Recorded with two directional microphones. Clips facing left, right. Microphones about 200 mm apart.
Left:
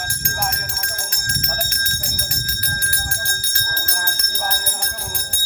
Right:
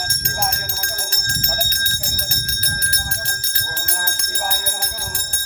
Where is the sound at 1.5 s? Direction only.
30° right (ahead or behind).